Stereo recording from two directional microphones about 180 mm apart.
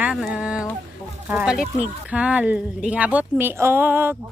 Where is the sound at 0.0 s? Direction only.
5° right (ahead or behind).